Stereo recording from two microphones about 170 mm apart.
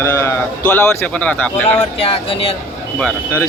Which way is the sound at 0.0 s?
15° left (ahead or behind).